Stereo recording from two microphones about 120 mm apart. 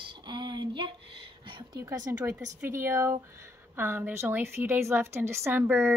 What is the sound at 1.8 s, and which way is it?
A woman's voice, 25° right (ahead or behind).